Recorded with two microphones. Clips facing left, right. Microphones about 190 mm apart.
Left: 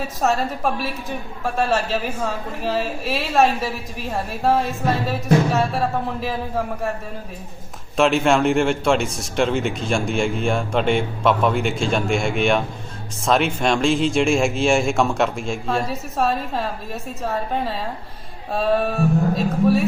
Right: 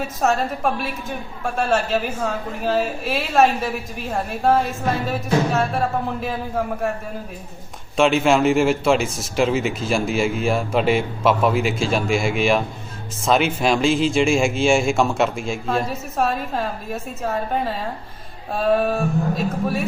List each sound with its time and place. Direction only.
0.2 s a man's voice: centre (ahead or behind)
7.9 s a man's voice: centre (ahead or behind)
18.5 s a man's voice: centre (ahead or behind)